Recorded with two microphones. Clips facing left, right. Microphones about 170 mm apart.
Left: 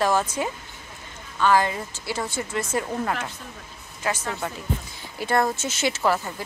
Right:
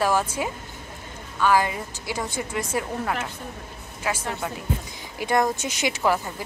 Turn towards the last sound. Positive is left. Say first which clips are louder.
# even
turn(degrees=-15)  # may be behind; listen again after turning